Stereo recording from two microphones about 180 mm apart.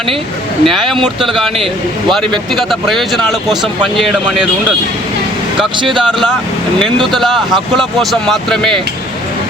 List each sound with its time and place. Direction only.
0.6 s speech: centre (ahead or behind)
2.6 s speech: centre (ahead or behind)
5.7 s speech: 25° right (ahead or behind)
7.1 s speech: centre (ahead or behind)